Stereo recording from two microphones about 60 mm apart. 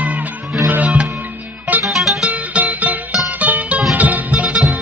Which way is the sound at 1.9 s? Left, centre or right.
Centre.